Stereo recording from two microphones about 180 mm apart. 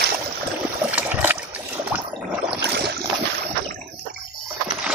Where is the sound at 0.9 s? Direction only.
10° right (ahead or behind).